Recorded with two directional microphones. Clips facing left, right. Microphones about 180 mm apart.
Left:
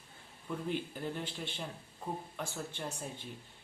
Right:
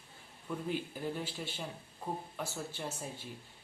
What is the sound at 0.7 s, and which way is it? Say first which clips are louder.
Speech: even; 5° right (ahead or behind).